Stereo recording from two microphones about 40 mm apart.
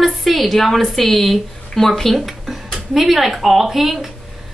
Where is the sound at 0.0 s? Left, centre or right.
Centre.